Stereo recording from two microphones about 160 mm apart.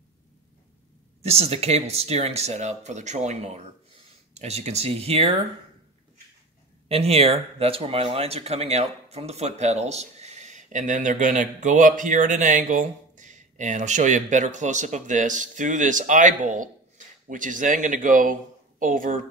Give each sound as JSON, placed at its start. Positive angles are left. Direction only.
{"t": 1.2, "sound": "speech", "side_deg": -40}
{"t": 6.9, "sound": "a man's voice", "side_deg": -40}